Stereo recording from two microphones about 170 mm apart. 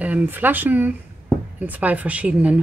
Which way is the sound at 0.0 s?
10° right (ahead or behind).